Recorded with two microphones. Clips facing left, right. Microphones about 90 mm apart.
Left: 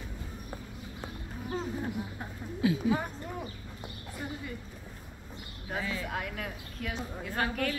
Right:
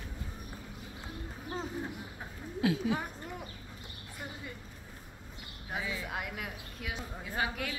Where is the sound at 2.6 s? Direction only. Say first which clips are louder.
Left 2 dB; 80° right.